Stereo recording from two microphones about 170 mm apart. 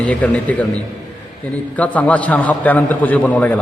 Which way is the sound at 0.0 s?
10° left (ahead or behind).